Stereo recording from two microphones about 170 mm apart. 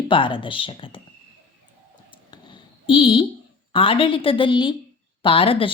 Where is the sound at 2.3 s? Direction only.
30° left (ahead or behind).